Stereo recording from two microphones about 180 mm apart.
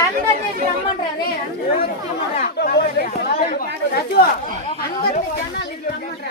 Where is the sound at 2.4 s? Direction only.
60° left (ahead or behind).